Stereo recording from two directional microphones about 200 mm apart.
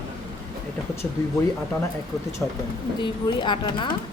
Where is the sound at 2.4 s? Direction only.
10° left (ahead or behind).